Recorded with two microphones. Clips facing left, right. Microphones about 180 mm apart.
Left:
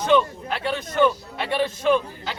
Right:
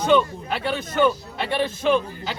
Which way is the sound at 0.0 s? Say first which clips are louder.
Right 1 dB; centre (ahead or behind).